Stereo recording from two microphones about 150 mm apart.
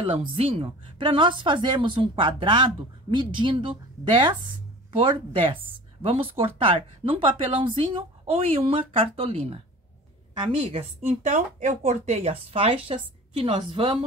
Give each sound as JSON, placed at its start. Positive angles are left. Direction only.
{"t": 0.0, "sound": "speech", "side_deg": -35}